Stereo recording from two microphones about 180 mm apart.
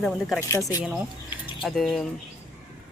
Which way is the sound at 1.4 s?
Centre (ahead or behind).